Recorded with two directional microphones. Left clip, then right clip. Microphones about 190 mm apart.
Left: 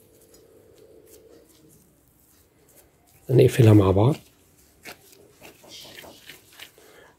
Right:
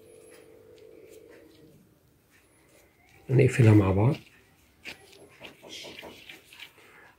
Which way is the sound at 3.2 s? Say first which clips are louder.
Left 6 dB; 35° left (ahead or behind).